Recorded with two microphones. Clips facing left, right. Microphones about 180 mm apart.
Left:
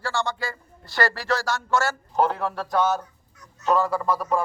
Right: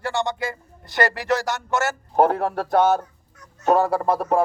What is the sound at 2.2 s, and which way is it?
Speech, 55° right (ahead or behind).